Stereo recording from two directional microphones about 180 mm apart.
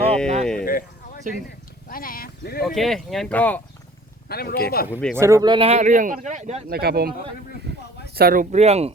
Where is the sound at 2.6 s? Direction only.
Centre (ahead or behind).